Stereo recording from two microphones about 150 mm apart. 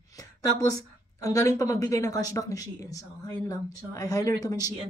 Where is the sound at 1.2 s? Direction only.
20° left (ahead or behind).